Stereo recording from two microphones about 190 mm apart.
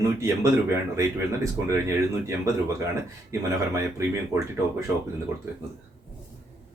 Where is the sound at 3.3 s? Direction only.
15° right (ahead or behind).